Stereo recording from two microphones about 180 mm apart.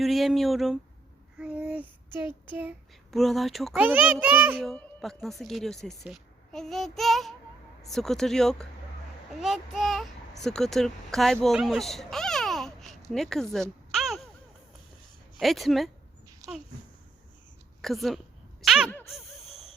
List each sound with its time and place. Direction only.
0.0 s speech: centre (ahead or behind)
1.4 s babbling: 5° right (ahead or behind)
2.1 s a child's voice: 10° right (ahead or behind)
3.1 s a child's voice: centre (ahead or behind)
4.6 s a woman's voice: 5° left (ahead or behind)
15.4 s a woman's voice: centre (ahead or behind)
16.4 s speech: 20° right (ahead or behind)
17.8 s a woman's voice: centre (ahead or behind)
18.9 s a sound: 10° left (ahead or behind)
19.1 s a sound: centre (ahead or behind)